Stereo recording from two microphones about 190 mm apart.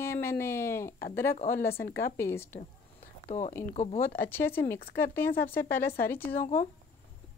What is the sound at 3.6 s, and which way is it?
Speech, 35° left (ahead or behind).